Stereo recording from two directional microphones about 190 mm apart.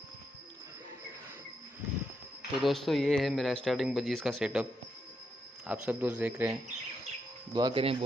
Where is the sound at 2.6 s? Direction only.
Centre (ahead or behind).